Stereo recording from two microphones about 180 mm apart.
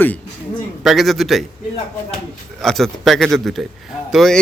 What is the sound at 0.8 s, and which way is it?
Speech, centre (ahead or behind).